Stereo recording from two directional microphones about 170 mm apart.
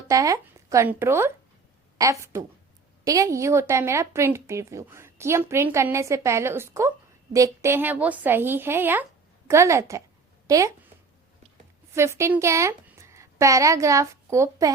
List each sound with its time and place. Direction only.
0.1 s a woman's voice: 20° right (ahead or behind)
11.9 s a woman's voice: 15° right (ahead or behind)